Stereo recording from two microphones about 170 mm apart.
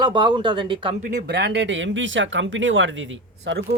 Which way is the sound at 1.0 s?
75° right (ahead or behind).